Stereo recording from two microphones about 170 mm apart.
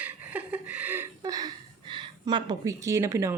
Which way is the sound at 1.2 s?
20° right (ahead or behind).